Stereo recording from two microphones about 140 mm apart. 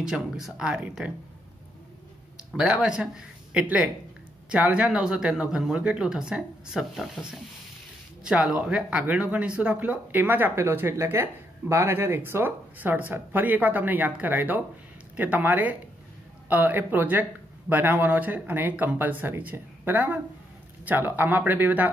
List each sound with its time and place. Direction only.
0.0 s speech: 5° right (ahead or behind)
2.5 s speech: 5° right (ahead or behind)